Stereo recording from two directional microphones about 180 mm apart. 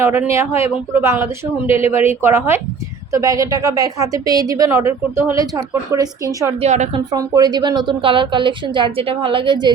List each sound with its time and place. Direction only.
0.0 s a woman's voice: 15° right (ahead or behind)
6.6 s a woman's voice: 40° right (ahead or behind)
6.9 s a woman's voice: 20° right (ahead or behind)